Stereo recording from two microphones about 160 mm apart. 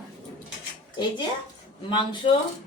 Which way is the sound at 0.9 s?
30° left (ahead or behind).